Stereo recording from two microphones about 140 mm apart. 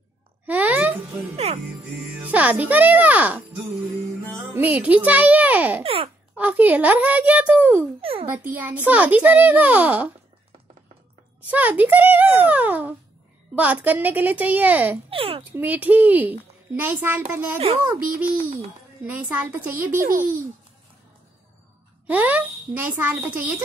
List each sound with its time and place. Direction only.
0.5 s music: 10° right (ahead or behind)
1.3 s a child's voice: 50° right (ahead or behind)
2.0 s a woman's voice: 10° right (ahead or behind)
4.6 s a woman's voice: 10° right (ahead or behind)
5.8 s a child's voice: 40° right (ahead or behind)
6.3 s a woman's voice: 10° right (ahead or behind)
8.0 s a child's voice: 45° right (ahead or behind)
8.3 s a woman's voice: 15° right (ahead or behind)
11.4 s a woman's voice: 10° right (ahead or behind)
15.0 s a child's voice: 40° right (ahead or behind)
15.5 s a woman's voice: 10° right (ahead or behind)
20.1 s a child's voice: 80° right
22.0 s a woman's voice: 10° right (ahead or behind)